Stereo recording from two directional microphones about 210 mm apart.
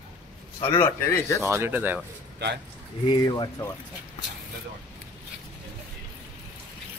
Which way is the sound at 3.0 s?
20° left (ahead or behind).